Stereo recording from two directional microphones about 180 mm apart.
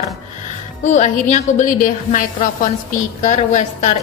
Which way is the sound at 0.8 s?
40° left (ahead or behind).